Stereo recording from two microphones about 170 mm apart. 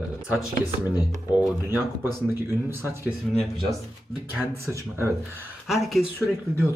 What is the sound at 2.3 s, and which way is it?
A man's voice, 15° right (ahead or behind).